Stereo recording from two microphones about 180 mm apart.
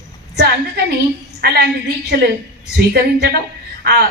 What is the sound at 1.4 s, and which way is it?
A woman's voice, 60° right (ahead or behind).